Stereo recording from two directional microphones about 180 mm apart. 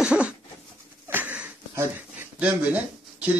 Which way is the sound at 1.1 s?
10° right (ahead or behind).